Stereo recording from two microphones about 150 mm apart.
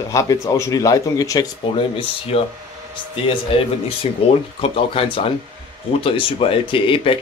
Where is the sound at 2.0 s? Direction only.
40° left (ahead or behind).